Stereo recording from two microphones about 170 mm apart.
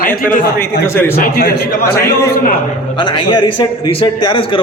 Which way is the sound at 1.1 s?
60° left (ahead or behind).